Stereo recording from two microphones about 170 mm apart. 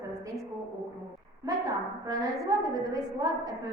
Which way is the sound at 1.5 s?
20° right (ahead or behind).